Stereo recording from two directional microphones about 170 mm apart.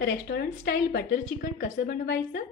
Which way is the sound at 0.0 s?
65° left (ahead or behind).